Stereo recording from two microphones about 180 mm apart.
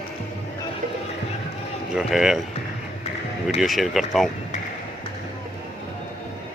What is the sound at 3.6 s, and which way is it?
Speech, centre (ahead or behind).